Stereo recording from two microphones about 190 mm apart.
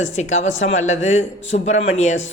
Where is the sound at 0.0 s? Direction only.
40° left (ahead or behind).